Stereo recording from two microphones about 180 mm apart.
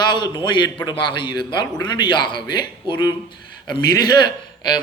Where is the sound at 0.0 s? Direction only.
25° left (ahead or behind).